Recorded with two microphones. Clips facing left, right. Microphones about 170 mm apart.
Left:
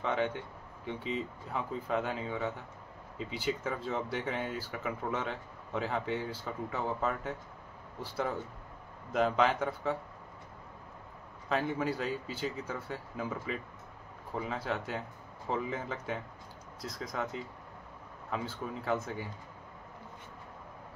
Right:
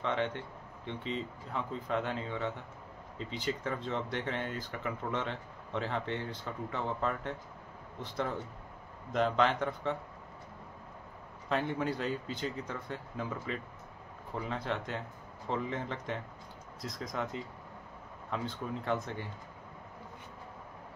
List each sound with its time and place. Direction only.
0.0 s speech: 5° left (ahead or behind)
11.4 s speech: centre (ahead or behind)